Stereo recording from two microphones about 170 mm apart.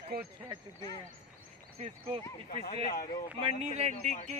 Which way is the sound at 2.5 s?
55° left (ahead or behind).